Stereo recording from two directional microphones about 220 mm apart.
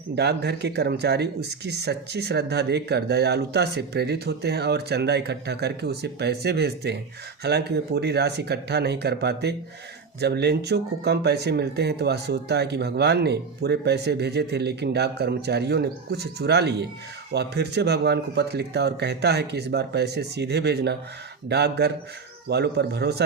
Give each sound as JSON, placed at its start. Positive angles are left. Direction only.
{"t": 0.2, "sound": "speech", "side_deg": -50}